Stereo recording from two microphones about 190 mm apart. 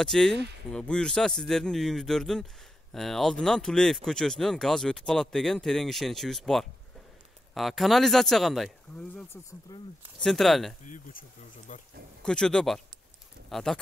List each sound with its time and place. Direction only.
0.0 s speech: 5° left (ahead or behind)
9.7 s speech: 20° left (ahead or behind)
10.2 s speech: centre (ahead or behind)
11.7 s speech: 40° left (ahead or behind)
12.2 s speech: 5° left (ahead or behind)